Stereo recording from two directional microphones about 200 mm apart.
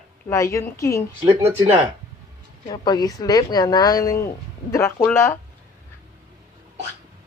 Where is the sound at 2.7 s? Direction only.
20° left (ahead or behind).